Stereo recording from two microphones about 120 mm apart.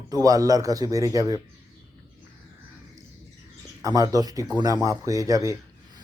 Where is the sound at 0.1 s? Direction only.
30° right (ahead or behind).